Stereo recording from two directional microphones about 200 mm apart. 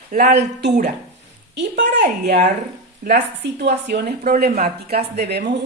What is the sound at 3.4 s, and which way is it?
A woman's voice, 55° right (ahead or behind).